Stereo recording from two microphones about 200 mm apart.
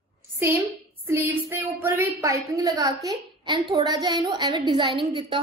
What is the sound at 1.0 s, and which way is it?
A woman's voice, 10° right (ahead or behind).